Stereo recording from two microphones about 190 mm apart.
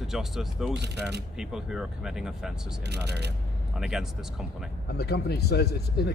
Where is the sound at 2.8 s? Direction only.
60° right (ahead or behind).